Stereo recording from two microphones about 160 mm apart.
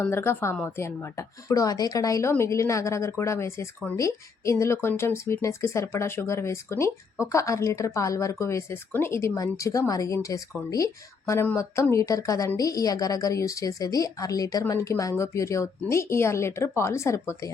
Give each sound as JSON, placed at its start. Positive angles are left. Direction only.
{"t": 0.0, "sound": "a woman's voice", "side_deg": 15}